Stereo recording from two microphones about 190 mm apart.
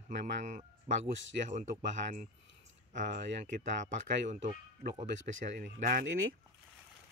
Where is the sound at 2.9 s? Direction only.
40° right (ahead or behind).